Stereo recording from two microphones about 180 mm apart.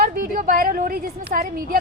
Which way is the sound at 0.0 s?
50° right (ahead or behind).